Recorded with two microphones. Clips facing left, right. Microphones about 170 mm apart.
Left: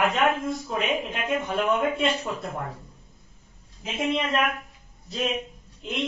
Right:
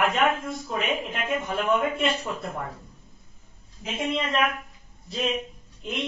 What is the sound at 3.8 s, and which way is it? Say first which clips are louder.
Speech: left 2 dB; centre (ahead or behind).